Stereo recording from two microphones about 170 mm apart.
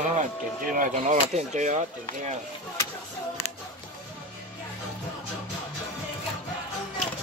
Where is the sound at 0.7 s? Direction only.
45° right (ahead or behind).